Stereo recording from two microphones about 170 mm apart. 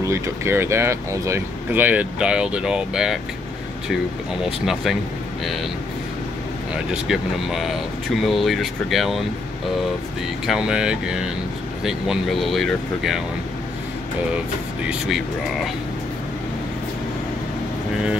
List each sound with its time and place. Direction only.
0.0 s speech: 15° right (ahead or behind)
4.5 s speech: centre (ahead or behind)
6.7 s speech: 5° right (ahead or behind)
10.4 s speech: 5° right (ahead or behind)